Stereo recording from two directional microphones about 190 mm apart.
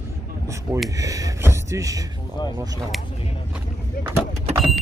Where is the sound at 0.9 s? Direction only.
15° right (ahead or behind).